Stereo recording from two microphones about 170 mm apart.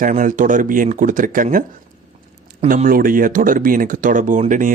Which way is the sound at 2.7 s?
55° right (ahead or behind).